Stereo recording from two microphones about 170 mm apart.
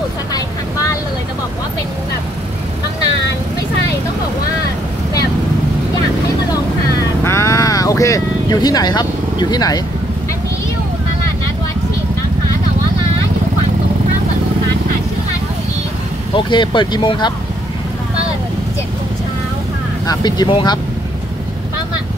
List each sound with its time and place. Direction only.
0.3 s vehicle: 20° left (ahead or behind)
7.0 s vehicle: 15° left (ahead or behind)
16.3 s speech: 30° left (ahead or behind)
20.1 s speech: 25° left (ahead or behind)